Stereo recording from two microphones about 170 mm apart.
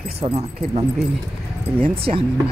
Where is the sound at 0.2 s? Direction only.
40° right (ahead or behind).